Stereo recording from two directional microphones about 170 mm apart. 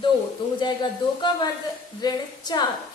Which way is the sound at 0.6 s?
25° left (ahead or behind).